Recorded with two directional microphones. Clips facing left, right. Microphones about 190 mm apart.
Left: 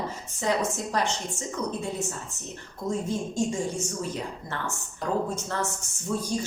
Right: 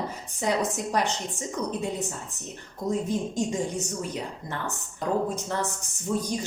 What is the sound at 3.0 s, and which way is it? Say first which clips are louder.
A woman's voice: even; 20° right (ahead or behind).